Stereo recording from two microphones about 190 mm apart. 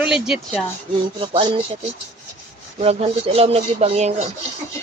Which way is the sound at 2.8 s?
30° right (ahead or behind).